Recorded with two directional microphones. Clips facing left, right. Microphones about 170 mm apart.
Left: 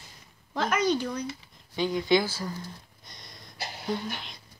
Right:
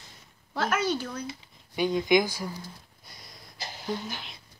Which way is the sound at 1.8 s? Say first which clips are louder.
Right 1 dB; 20° right (ahead or behind).